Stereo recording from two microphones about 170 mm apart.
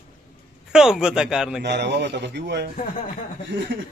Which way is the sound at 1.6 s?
85° right.